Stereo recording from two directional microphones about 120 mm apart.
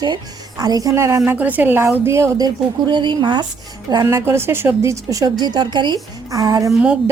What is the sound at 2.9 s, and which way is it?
Speech, 40° right (ahead or behind).